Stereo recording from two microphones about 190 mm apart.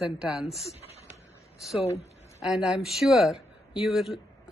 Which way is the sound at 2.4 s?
Centre (ahead or behind).